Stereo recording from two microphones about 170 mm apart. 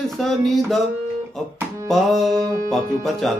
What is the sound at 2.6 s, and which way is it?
Music, centre (ahead or behind).